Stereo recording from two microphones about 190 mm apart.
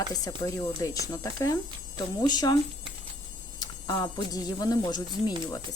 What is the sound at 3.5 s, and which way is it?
A woman's voice, 20° left (ahead or behind).